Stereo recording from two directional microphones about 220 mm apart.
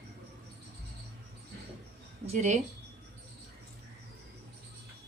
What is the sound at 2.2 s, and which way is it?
Speech, 30° right (ahead or behind).